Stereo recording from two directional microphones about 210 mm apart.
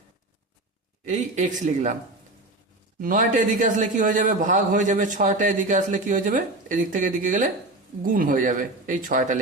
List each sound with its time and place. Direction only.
1.0 s a man's voice: 35° right (ahead or behind)
3.0 s a man's voice: 40° right (ahead or behind)